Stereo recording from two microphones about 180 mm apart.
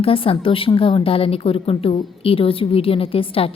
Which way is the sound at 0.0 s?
30° left (ahead or behind).